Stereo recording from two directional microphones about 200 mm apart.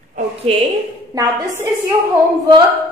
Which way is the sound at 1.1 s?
15° right (ahead or behind).